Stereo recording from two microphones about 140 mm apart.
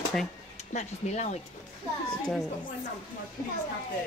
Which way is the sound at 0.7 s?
55° left (ahead or behind).